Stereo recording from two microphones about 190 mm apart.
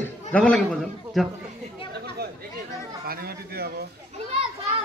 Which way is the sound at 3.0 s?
55° right (ahead or behind).